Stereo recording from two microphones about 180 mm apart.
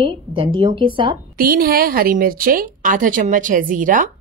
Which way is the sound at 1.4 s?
55° right (ahead or behind).